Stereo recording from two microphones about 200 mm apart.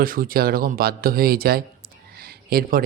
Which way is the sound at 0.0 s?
45° right (ahead or behind).